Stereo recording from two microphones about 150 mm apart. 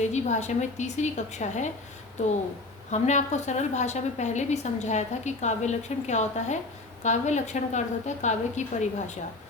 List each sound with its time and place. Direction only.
0.0 s a woman's voice: 50° left (ahead or behind)